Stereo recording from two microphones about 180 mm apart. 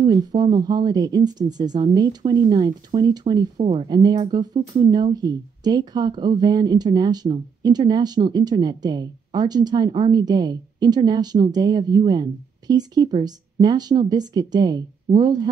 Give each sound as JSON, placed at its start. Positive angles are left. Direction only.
{"t": 0.0, "sound": "speech", "side_deg": -25}
{"t": 3.5, "sound": "speech", "side_deg": -35}